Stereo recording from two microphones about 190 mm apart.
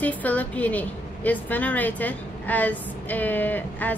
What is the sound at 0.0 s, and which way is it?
A woman's voice, 10° left (ahead or behind).